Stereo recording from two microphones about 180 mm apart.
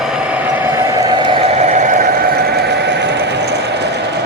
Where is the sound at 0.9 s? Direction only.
25° right (ahead or behind).